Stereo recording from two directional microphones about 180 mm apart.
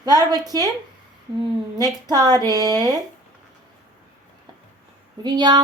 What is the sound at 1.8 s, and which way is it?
A woman's voice, 20° right (ahead or behind).